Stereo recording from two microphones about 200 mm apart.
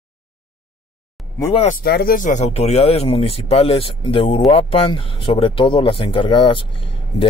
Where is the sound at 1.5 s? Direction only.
30° left (ahead or behind).